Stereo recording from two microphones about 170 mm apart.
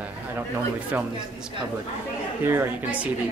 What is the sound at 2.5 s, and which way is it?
Speech, 10° right (ahead or behind).